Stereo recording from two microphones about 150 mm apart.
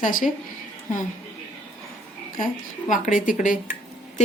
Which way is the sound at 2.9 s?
60° left (ahead or behind).